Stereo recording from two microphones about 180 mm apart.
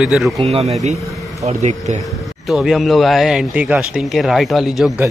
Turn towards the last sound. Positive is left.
turn(degrees=0)  # may be behind; listen again after turning